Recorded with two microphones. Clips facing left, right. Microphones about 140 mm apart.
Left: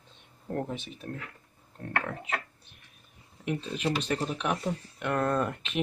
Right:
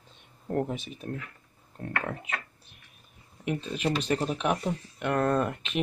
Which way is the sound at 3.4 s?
5° right (ahead or behind).